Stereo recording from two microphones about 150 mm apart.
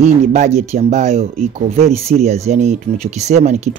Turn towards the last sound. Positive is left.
turn(degrees=-50)  # may be behind; listen again after turning